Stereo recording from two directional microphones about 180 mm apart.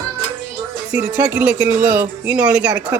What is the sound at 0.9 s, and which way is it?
Speech, 10° right (ahead or behind).